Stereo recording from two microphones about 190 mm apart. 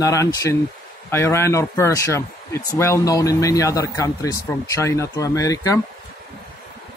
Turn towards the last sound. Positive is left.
turn(degrees=15)  # may be behind; listen again after turning